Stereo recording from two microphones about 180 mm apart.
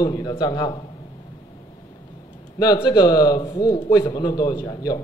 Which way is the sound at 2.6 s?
25° left (ahead or behind).